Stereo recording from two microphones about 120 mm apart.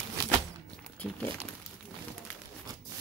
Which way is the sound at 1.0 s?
10° left (ahead or behind).